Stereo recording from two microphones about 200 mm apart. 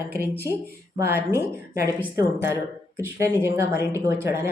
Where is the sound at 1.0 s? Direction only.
15° right (ahead or behind).